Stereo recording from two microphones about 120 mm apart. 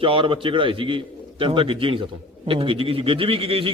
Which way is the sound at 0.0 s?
45° right (ahead or behind).